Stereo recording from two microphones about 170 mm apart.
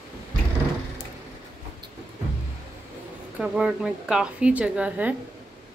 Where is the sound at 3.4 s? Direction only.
5° right (ahead or behind).